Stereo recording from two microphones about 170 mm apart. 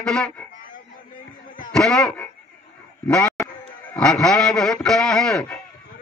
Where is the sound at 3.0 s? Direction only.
5° left (ahead or behind).